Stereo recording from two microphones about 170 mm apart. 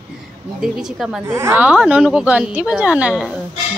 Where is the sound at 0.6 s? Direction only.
5° right (ahead or behind).